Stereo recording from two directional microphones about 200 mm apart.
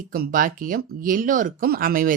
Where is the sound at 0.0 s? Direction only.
45° right (ahead or behind).